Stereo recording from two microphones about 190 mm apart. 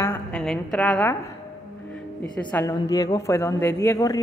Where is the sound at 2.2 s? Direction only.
10° left (ahead or behind).